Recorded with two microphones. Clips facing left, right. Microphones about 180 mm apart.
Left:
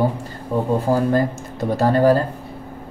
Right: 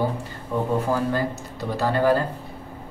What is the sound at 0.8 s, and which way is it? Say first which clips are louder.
Speech: left 5 dB; 35° left (ahead or behind).